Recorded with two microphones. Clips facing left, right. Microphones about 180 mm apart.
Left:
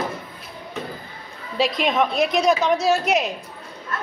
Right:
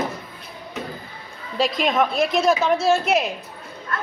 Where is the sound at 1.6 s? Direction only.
Centre (ahead or behind).